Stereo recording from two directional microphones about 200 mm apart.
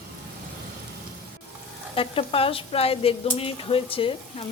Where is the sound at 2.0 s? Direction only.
30° left (ahead or behind).